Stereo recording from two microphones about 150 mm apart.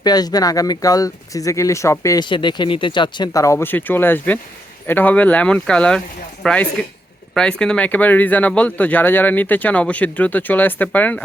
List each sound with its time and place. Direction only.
0.0 s speech: 25° left (ahead or behind)
2.3 s speech: 30° left (ahead or behind); by 11.2 s 10° left (ahead or behind)